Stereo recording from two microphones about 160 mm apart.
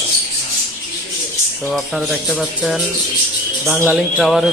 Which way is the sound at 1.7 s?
Centre (ahead or behind).